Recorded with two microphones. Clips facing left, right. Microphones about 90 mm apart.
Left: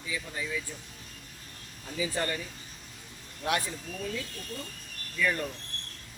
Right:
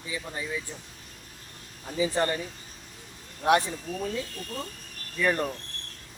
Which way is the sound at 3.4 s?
35° right (ahead or behind).